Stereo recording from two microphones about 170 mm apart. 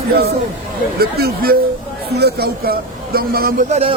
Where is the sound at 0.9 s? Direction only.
65° right (ahead or behind).